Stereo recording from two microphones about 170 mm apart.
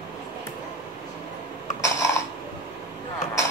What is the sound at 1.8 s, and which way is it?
Mechanisms, 15° left (ahead or behind).